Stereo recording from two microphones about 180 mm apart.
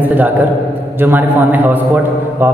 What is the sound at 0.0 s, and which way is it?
A man's voice, 10° right (ahead or behind).